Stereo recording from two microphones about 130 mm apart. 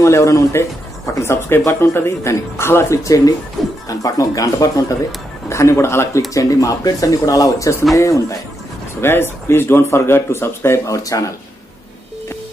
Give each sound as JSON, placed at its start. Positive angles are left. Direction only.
{"t": 0.0, "sound": "speech", "side_deg": 20}
{"t": 3.6, "sound": "speech", "side_deg": 0}
{"t": 3.9, "sound": "speech", "side_deg": 25}